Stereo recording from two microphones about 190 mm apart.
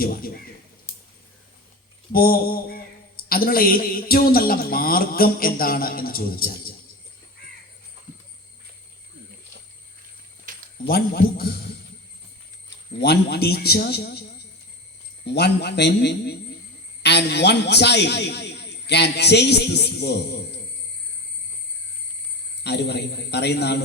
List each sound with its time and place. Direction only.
0.0 s a man's voice: 50° left (ahead or behind)
0.9 s a sound: 15° left (ahead or behind)
2.1 s a man's voice: 50° left (ahead or behind)
10.5 s a sound: 45° right (ahead or behind)
10.8 s a man's voice: 55° left (ahead or behind)
13.0 s a man's voice: 60° left (ahead or behind)
15.4 s a man's voice: 60° left (ahead or behind)
22.6 s a man's voice: 60° left (ahead or behind)